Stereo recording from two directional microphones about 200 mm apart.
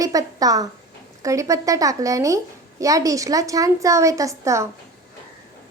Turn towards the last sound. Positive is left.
turn(degrees=-15)  # may be behind; listen again after turning